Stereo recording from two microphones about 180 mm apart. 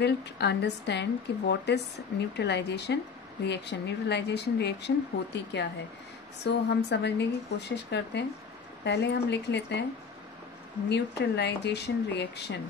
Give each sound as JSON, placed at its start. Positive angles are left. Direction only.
{"t": 0.0, "sound": "speech", "side_deg": 70}
{"t": 10.9, "sound": "speech", "side_deg": 70}